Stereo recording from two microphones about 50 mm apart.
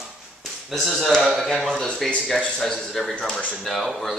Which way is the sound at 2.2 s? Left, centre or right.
Centre.